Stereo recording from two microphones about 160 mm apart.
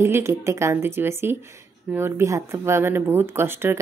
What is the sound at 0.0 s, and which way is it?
Speech, 15° right (ahead or behind).